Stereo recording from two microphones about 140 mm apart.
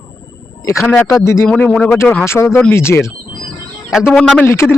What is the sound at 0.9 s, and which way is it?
Speech, 15° left (ahead or behind).